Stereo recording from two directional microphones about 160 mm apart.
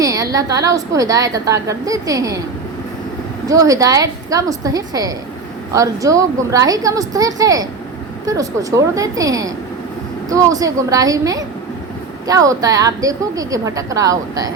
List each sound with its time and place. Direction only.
0.0 s a woman's voice: 20° right (ahead or behind)
3.4 s a woman's voice: 20° right (ahead or behind)